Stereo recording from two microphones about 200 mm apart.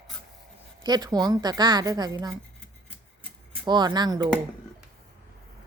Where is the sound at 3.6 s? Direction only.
20° right (ahead or behind).